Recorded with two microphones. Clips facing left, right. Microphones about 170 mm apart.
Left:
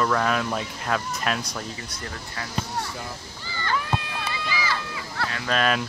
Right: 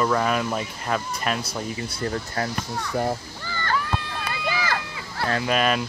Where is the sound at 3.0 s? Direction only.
50° right (ahead or behind).